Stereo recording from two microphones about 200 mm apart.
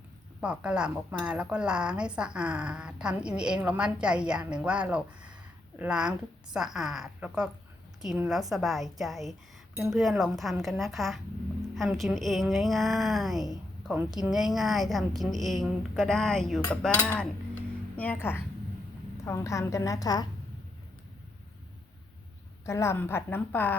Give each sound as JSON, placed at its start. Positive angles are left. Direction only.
{"t": 0.4, "sound": "a woman's voice", "side_deg": -5}
{"t": 22.6, "sound": "a woman's voice", "side_deg": 15}